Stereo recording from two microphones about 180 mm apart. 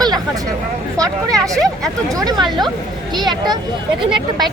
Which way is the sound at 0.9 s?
20° right (ahead or behind).